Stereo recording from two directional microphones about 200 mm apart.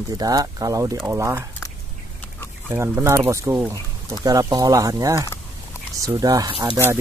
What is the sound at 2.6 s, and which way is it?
Speech, 10° right (ahead or behind).